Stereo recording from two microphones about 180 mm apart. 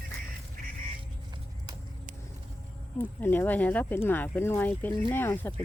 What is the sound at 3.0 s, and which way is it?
Speech, 10° left (ahead or behind).